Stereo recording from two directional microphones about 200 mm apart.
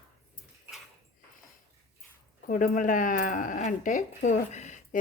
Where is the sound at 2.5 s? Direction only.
40° left (ahead or behind).